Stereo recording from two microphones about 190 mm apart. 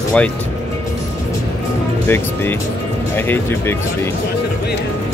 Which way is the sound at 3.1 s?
10° left (ahead or behind).